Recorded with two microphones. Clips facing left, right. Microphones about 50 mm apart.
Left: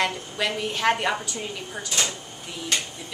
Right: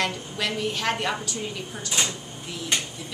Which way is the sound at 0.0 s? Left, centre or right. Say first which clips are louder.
Left 2 dB; centre.